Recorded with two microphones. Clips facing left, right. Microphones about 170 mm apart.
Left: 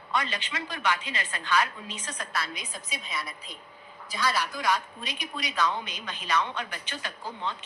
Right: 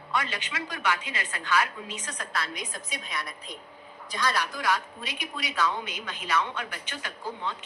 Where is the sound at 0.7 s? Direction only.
20° left (ahead or behind).